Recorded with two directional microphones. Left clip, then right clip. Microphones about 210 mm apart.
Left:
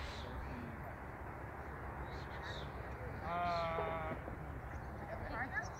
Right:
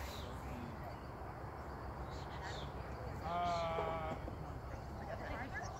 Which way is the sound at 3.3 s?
25° left (ahead or behind).